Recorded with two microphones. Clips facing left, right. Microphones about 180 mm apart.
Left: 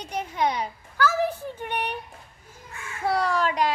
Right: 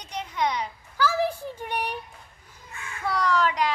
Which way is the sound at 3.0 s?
35° left (ahead or behind).